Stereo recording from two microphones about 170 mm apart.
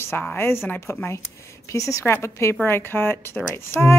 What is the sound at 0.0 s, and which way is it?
A woman's voice, 15° left (ahead or behind).